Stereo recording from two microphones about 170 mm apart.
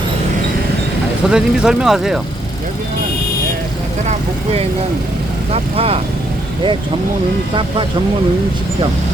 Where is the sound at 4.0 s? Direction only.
45° right (ahead or behind).